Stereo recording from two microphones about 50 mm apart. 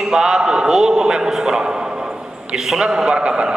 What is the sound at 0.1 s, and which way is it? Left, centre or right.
A man's voice, centre.